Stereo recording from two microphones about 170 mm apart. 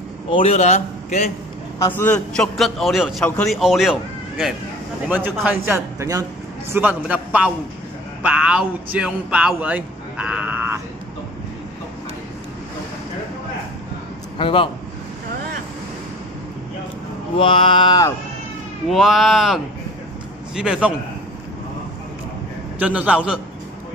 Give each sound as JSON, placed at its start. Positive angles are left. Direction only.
{"t": 0.3, "sound": "a man's voice", "side_deg": 35}
{"t": 2.0, "sound": "a man's voice", "side_deg": 10}
{"t": 14.4, "sound": "mantra", "side_deg": 30}
{"t": 17.4, "sound": "mantra", "side_deg": 30}
{"t": 18.9, "sound": "a man's voice", "side_deg": 0}
{"t": 22.8, "sound": "speech", "side_deg": -10}